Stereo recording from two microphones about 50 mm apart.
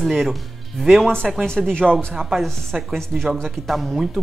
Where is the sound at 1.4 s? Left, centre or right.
Centre.